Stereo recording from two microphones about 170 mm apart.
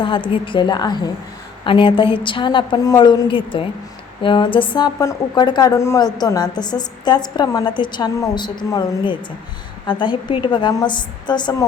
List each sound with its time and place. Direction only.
0.0 s a woman's voice: 30° left (ahead or behind)